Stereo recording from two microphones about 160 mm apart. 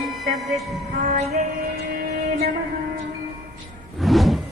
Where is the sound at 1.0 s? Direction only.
45° right (ahead or behind).